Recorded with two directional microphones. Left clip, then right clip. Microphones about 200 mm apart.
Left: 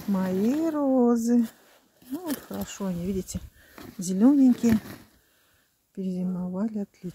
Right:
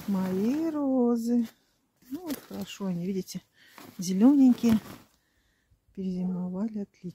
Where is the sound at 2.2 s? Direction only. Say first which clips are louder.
Left 4 dB; 35° left (ahead or behind).